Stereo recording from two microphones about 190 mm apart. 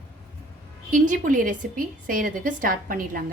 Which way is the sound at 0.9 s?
45° right (ahead or behind).